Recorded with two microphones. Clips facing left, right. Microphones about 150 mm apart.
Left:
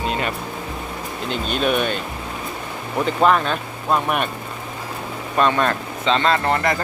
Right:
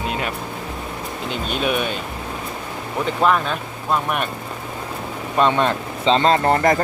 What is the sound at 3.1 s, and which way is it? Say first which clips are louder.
Speech: left 1 dB; centre (ahead or behind).